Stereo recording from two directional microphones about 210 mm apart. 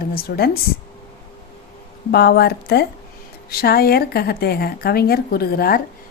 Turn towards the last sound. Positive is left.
turn(degrees=45)  # may be behind; listen again after turning